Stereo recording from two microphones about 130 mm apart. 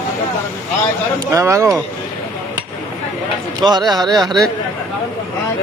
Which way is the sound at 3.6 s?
30° right (ahead or behind).